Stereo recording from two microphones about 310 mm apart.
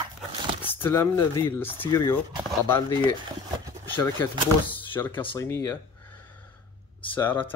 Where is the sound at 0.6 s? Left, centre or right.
Centre.